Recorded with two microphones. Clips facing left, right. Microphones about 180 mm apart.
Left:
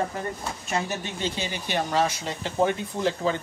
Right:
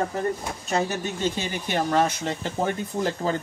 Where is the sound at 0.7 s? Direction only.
45° right (ahead or behind).